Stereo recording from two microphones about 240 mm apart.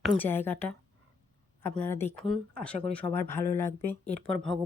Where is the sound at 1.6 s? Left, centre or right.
Centre.